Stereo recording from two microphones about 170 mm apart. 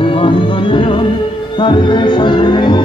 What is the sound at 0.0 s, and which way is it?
Music, 30° left (ahead or behind).